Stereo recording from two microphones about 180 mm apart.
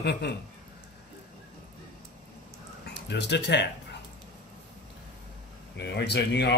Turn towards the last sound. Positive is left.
turn(degrees=65)  # may be behind; listen again after turning